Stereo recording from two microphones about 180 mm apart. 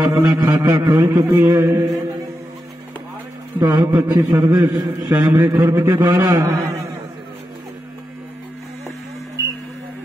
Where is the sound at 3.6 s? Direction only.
15° right (ahead or behind).